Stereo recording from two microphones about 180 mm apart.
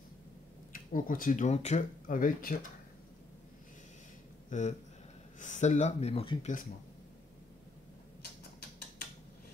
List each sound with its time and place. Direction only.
0.7 s speech: 50° left (ahead or behind)
4.5 s speech: 40° left (ahead or behind)